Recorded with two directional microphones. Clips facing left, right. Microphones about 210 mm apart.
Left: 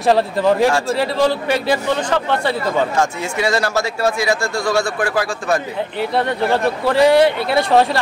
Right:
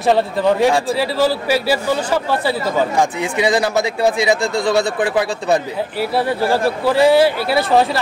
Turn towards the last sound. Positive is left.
turn(degrees=0)  # may be behind; listen again after turning